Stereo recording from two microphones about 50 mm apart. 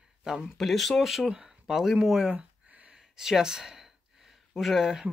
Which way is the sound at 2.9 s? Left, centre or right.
Centre.